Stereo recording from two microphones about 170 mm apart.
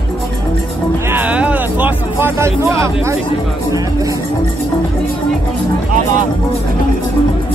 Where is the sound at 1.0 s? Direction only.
10° right (ahead or behind).